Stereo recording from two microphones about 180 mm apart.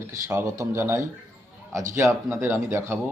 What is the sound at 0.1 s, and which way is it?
Speech, 15° right (ahead or behind).